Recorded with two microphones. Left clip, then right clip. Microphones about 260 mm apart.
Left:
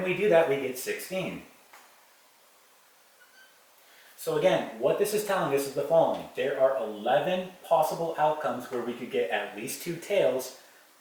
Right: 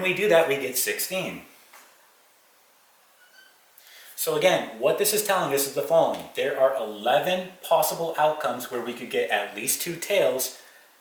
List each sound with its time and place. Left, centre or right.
0.0 s speech: centre
4.5 s speech: centre
7.8 s speech: centre
8.1 s speech: centre